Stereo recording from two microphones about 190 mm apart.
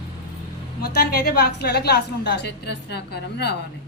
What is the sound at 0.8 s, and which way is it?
A woman's voice, 55° left (ahead or behind).